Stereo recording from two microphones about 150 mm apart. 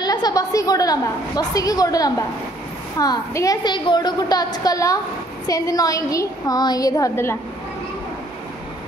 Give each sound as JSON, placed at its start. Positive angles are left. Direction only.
{"t": 0.0, "sound": "a woman's voice", "side_deg": 25}